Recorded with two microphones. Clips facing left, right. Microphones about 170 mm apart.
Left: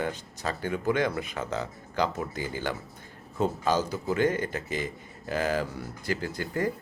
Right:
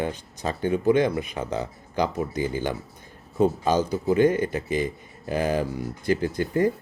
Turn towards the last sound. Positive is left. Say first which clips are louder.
# right 7 dB
turn(degrees=-20)  # may be behind; listen again after turning